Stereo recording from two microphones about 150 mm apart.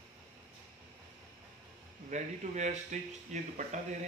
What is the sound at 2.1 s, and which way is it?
Speech, 55° right (ahead or behind).